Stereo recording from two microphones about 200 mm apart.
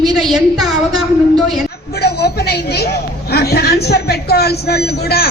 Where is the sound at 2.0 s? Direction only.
55° left (ahead or behind).